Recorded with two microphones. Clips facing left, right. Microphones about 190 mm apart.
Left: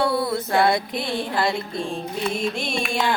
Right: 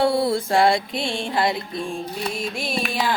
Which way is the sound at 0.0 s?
25° right (ahead or behind).